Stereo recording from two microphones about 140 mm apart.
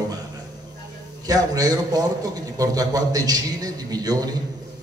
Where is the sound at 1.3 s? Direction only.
25° right (ahead or behind).